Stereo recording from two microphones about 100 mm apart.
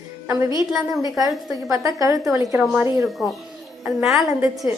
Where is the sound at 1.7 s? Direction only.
35° right (ahead or behind).